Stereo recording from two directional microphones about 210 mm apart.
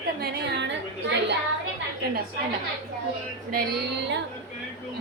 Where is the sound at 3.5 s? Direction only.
50° right (ahead or behind).